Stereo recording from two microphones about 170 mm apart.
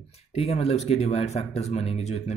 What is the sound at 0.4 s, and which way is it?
Speech, 35° left (ahead or behind).